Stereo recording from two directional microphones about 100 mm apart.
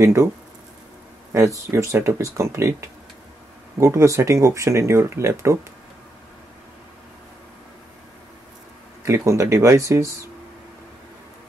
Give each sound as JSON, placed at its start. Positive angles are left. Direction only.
{"t": 0.0, "sound": "speech", "side_deg": -25}
{"t": 1.3, "sound": "speech", "side_deg": -30}
{"t": 3.8, "sound": "speech", "side_deg": -30}
{"t": 9.0, "sound": "speech", "side_deg": -30}